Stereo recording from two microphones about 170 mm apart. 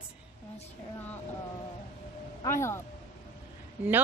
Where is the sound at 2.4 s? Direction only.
15° left (ahead or behind).